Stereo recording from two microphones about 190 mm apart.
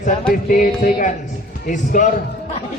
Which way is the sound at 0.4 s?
45° left (ahead or behind).